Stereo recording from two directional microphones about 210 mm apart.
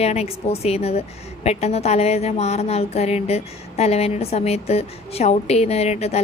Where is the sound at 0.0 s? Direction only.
30° left (ahead or behind).